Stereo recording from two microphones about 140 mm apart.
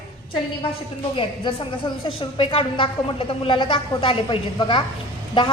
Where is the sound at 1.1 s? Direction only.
35° left (ahead or behind).